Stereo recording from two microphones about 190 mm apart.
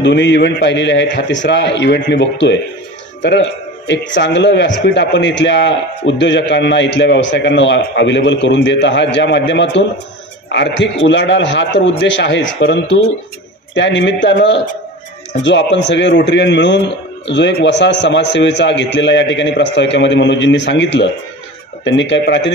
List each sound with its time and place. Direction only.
0.0 s a man's voice: 65° left (ahead or behind)